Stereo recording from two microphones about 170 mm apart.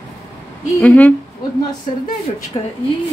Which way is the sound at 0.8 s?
10° left (ahead or behind).